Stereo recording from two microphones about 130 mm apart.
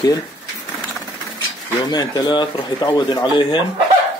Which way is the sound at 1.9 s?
35° left (ahead or behind).